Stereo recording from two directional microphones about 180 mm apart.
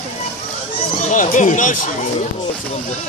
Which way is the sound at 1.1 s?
50° left (ahead or behind).